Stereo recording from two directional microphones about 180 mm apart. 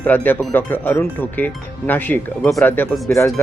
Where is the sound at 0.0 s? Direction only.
10° left (ahead or behind).